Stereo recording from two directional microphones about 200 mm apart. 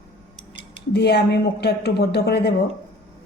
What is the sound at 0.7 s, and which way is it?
A woman's voice, 55° left (ahead or behind).